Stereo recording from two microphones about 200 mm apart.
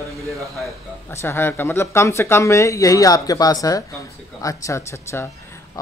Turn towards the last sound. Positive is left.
turn(degrees=15)  # may be behind; listen again after turning